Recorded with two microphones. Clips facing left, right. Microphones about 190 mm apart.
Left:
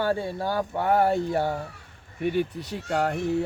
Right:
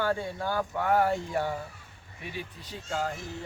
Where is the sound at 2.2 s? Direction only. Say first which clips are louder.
Left 14 dB; 60° left (ahead or behind).